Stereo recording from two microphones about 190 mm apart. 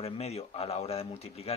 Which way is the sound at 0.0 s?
35° left (ahead or behind).